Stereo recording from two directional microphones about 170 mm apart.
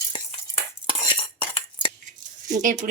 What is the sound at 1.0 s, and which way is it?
Cutlery, 30° left (ahead or behind).